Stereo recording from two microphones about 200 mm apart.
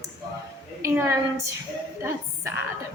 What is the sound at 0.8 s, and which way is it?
Speech, 15° right (ahead or behind).